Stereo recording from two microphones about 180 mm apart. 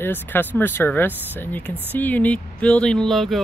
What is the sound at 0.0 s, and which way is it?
Speech, 10° left (ahead or behind).